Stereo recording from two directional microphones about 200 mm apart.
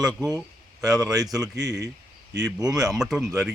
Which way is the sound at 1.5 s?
20° right (ahead or behind).